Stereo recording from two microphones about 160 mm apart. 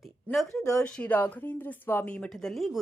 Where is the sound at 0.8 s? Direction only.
10° left (ahead or behind).